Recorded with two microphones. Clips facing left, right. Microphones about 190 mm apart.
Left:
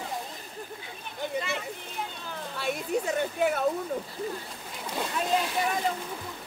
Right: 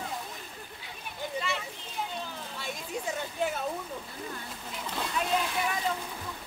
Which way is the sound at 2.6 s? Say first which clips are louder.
Left 9 dB; 65° left (ahead or behind).